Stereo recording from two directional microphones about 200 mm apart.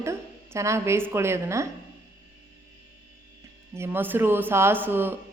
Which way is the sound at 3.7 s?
10° right (ahead or behind).